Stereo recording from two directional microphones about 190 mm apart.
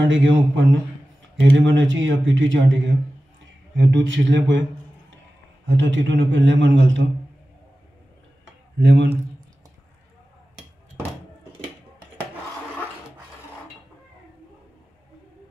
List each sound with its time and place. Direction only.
0.0 s a man's voice: 80° right
5.7 s a man's voice: 75° right (ahead or behind)
8.7 s a man's voice: 70° right (ahead or behind)